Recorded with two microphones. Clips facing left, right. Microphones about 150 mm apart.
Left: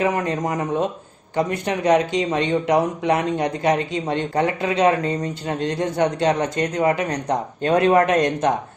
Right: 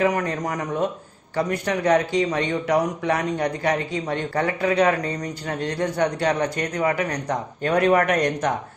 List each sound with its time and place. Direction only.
0.0 s speech: 20° left (ahead or behind)